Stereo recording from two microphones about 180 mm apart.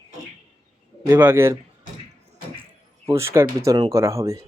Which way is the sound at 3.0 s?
15° right (ahead or behind).